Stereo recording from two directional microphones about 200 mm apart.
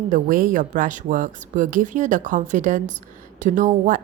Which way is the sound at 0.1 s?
40° right (ahead or behind).